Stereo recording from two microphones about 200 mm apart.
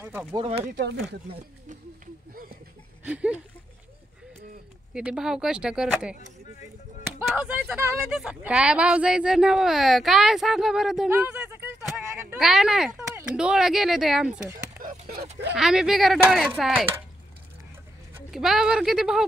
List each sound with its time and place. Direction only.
0.0 s speech: 10° right (ahead or behind)
0.4 s speech: 30° right (ahead or behind)
0.7 s speech: 55° right (ahead or behind)
3.0 s a sound: 5° right (ahead or behind)
4.9 s speech: 5° right (ahead or behind)
7.2 s speech: 5° right (ahead or behind)
15.5 s speech: 5° right (ahead or behind)
18.3 s speech: centre (ahead or behind)